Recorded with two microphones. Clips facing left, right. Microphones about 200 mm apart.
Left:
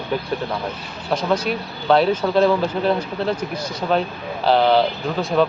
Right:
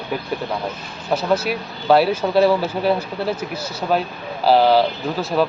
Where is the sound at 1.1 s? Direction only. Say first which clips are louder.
Right 1 dB; 5° right (ahead or behind).